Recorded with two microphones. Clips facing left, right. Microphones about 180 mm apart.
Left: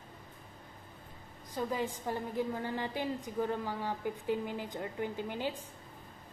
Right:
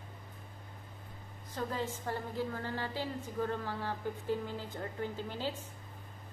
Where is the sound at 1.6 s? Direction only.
15° left (ahead or behind).